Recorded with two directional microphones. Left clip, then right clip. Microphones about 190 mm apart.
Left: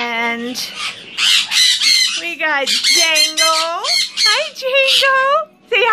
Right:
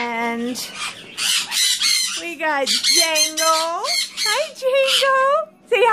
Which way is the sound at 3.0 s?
25° right (ahead or behind).